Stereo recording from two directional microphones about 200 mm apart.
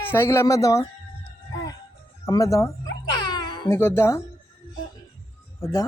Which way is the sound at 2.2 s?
15° left (ahead or behind).